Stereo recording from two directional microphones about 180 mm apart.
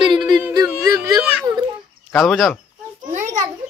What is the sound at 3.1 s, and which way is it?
Children playing, 45° right (ahead or behind).